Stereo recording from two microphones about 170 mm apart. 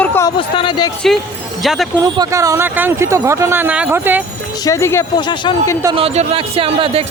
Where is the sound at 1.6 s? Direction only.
Centre (ahead or behind).